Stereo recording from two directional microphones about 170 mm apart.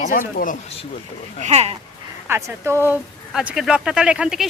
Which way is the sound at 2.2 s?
15° right (ahead or behind).